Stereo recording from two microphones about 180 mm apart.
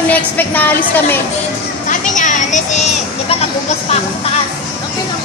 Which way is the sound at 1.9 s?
45° left (ahead or behind).